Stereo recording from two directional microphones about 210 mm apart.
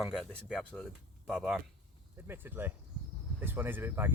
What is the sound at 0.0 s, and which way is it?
Speech, centre (ahead or behind).